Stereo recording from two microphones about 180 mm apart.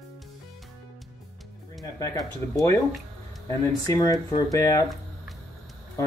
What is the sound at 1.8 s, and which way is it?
Speech, 20° left (ahead or behind).